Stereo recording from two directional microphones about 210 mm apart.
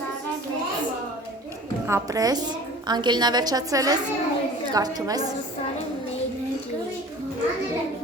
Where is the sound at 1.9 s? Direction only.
15° right (ahead or behind).